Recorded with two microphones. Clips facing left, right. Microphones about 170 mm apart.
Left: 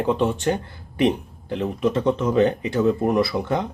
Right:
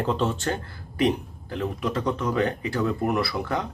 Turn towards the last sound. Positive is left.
turn(degrees=20)  # may be behind; listen again after turning